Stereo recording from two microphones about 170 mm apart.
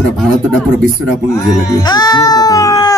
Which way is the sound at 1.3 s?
20° left (ahead or behind).